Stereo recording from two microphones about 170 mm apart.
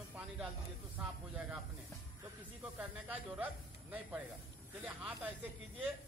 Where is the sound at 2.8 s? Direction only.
5° right (ahead or behind).